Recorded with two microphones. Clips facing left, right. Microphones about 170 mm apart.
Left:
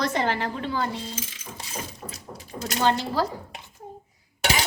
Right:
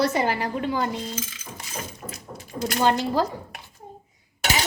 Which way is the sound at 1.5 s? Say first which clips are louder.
Right 1 dB; 30° left (ahead or behind).